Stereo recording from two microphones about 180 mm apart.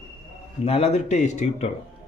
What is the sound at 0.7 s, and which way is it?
Speech, 35° left (ahead or behind).